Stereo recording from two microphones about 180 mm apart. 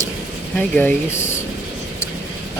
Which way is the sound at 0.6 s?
10° left (ahead or behind).